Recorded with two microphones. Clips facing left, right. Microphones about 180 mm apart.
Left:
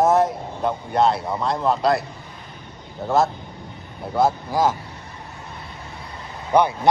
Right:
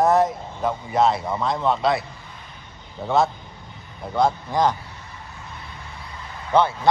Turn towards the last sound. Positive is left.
turn(degrees=15)  # may be behind; listen again after turning